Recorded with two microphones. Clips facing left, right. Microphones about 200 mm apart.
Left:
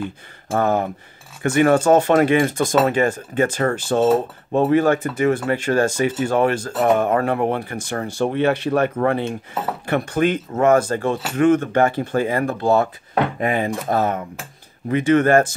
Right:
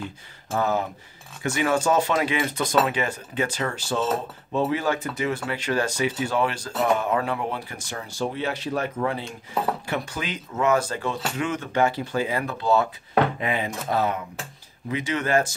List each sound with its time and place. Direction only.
0.5 s speech: 55° left (ahead or behind)